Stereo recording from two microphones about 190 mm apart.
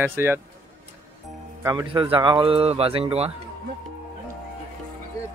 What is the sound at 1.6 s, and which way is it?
Speech, 15° right (ahead or behind).